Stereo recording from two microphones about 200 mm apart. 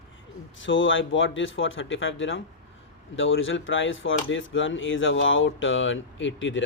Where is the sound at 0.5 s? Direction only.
70° left (ahead or behind).